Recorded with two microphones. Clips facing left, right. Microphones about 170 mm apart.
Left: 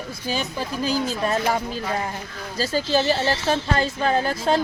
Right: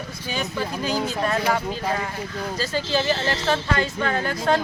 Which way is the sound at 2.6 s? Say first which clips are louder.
Left 4 dB; 35° left (ahead or behind).